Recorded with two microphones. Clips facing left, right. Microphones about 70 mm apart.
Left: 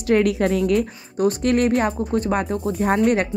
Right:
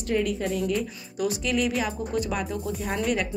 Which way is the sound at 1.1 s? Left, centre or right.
Left.